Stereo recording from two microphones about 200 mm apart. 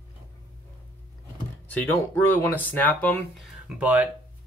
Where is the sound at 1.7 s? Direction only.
10° left (ahead or behind).